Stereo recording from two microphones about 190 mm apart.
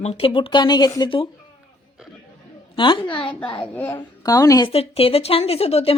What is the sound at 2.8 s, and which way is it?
Speech, 25° left (ahead or behind).